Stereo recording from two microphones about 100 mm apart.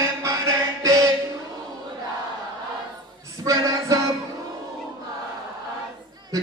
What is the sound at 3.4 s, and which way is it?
Music, 35° right (ahead or behind).